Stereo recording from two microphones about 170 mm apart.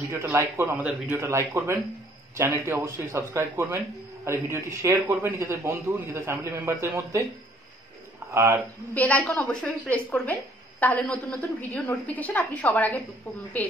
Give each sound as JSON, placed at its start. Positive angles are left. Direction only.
{"t": 0.1, "sound": "a man's voice", "side_deg": -15}
{"t": 8.3, "sound": "a man's voice", "side_deg": -15}
{"t": 8.9, "sound": "a woman's voice", "side_deg": 10}